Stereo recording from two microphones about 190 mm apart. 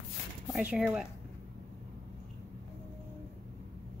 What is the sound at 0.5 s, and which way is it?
Speech, 5° right (ahead or behind).